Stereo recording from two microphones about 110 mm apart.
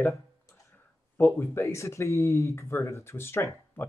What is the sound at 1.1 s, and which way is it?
Speech, 20° left (ahead or behind).